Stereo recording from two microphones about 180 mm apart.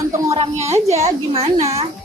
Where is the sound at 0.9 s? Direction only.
35° right (ahead or behind).